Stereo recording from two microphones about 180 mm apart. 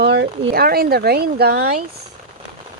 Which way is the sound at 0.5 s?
55° right (ahead or behind).